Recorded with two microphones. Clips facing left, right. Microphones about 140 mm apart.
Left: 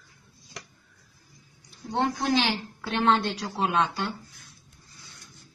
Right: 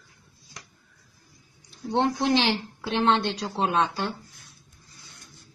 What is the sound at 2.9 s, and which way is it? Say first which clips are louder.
Speech: right 1 dB; centre (ahead or behind).